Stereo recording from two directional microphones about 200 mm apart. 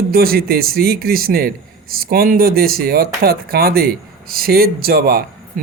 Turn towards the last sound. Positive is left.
turn(degrees=-50)  # may be behind; listen again after turning